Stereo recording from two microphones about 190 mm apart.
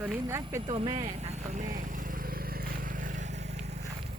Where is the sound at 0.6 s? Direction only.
30° right (ahead or behind).